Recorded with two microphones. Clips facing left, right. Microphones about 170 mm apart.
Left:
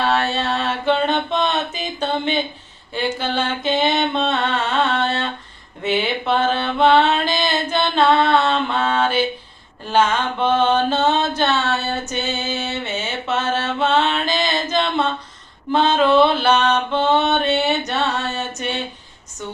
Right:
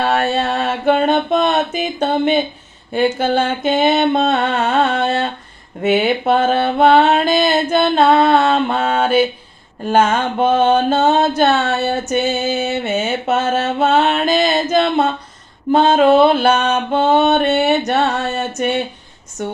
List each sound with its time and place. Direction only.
0.0 s mantra: 50° right (ahead or behind)
15.7 s a sound: 45° right (ahead or behind)
19.4 s speech: 60° right (ahead or behind)